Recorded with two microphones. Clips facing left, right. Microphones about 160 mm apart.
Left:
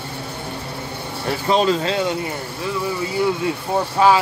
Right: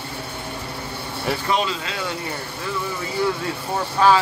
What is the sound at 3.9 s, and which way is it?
Speech, 15° left (ahead or behind).